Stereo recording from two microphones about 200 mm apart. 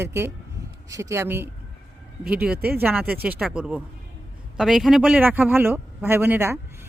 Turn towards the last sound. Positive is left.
turn(degrees=-10)  # may be behind; listen again after turning